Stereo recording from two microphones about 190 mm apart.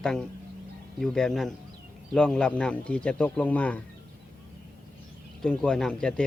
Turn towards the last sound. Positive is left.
turn(degrees=5)  # may be behind; listen again after turning